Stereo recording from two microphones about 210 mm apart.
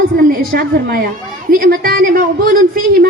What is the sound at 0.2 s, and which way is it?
A woman's voice, 45° right (ahead or behind).